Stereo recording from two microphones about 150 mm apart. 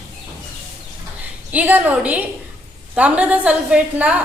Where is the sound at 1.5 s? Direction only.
10° right (ahead or behind).